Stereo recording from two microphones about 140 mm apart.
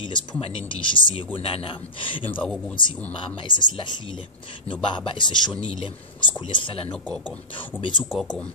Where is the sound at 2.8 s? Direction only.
35° left (ahead or behind).